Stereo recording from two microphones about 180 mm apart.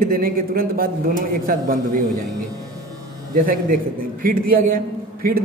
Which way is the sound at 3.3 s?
50° right (ahead or behind).